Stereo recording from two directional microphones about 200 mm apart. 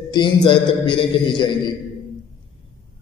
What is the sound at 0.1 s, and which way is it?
A man's voice, 20° left (ahead or behind).